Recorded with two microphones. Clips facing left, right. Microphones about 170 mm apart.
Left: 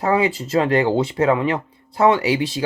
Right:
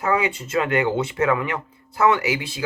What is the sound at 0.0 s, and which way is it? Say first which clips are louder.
Speech: left 4 dB; 30° left (ahead or behind).